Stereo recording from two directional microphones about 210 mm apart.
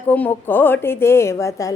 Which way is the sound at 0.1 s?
10° left (ahead or behind).